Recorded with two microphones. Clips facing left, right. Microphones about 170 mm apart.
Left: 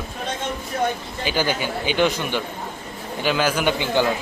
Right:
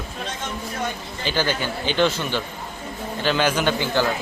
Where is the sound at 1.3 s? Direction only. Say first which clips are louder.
Left 1 dB; 10° left (ahead or behind).